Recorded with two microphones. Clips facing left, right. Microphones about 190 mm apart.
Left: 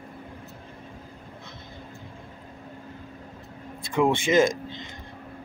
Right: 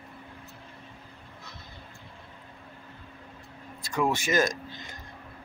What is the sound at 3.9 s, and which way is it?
Speech, 25° left (ahead or behind).